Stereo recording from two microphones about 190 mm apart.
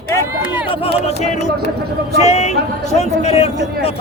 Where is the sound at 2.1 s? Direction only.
35° left (ahead or behind).